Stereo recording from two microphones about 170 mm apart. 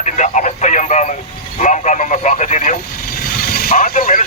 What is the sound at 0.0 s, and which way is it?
Radio, 45° left (ahead or behind).